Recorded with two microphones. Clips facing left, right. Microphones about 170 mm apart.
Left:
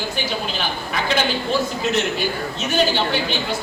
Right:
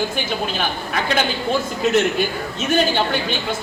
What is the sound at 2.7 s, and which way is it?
Speech, 50° right (ahead or behind).